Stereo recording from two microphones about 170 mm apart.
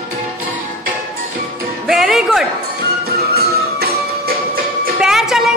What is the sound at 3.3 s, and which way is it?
Music, 70° right (ahead or behind).